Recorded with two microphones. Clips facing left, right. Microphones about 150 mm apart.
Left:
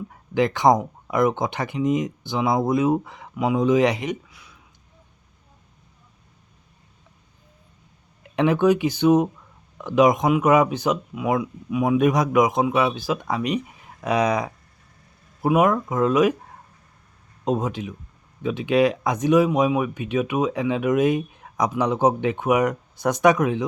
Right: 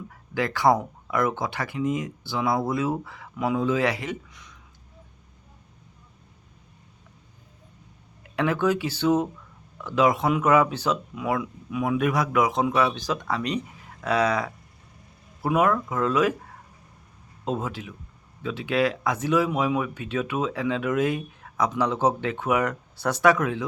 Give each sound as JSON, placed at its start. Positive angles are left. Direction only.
{"t": 0.1, "sound": "speech", "side_deg": 20}
{"t": 4.3, "sound": "a sound", "side_deg": 5}
{"t": 8.4, "sound": "speech", "side_deg": 20}
{"t": 17.4, "sound": "speech", "side_deg": 15}